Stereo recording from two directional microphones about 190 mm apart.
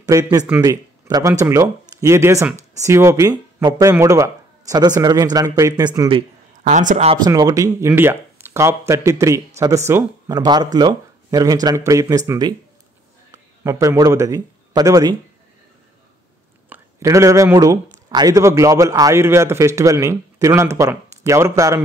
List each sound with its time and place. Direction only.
0.0 s speech: 20° right (ahead or behind)
6.7 s speech: 40° right (ahead or behind)
7.2 s a man's voice: 20° right (ahead or behind)
16.6 s a man's voice: 10° right (ahead or behind)